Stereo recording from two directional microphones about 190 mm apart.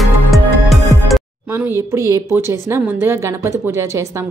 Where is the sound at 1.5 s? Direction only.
10° right (ahead or behind).